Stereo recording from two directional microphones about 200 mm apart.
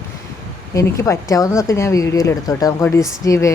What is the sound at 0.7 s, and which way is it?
A woman's voice, 15° left (ahead or behind).